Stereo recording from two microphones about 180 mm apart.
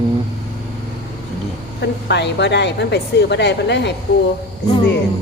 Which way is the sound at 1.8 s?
70° left (ahead or behind).